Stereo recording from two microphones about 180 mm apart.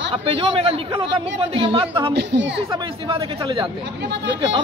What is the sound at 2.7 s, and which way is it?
Speech, 25° right (ahead or behind).